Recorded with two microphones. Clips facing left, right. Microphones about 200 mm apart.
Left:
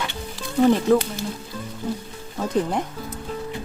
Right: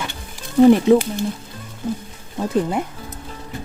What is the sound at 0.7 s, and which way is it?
Speech, 15° right (ahead or behind).